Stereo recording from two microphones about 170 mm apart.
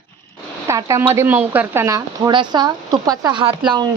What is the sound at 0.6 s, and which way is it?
Speech, 15° right (ahead or behind).